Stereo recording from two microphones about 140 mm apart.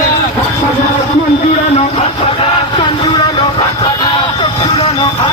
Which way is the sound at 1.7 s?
45° left (ahead or behind).